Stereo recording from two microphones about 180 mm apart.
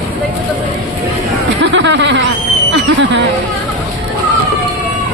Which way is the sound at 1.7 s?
80° right.